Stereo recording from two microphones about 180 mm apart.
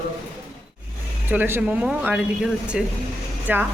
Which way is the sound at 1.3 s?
10° right (ahead or behind).